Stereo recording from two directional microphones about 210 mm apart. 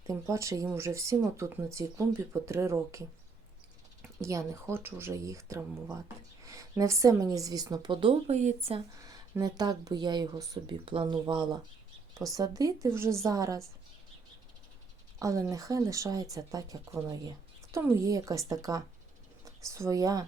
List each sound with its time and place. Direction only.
0.1 s speech: 15° right (ahead or behind)
4.2 s speech: 15° right (ahead or behind); by 8.8 s 30° right (ahead or behind)
9.0 s speech: 15° right (ahead or behind)
15.2 s speech: 15° right (ahead or behind)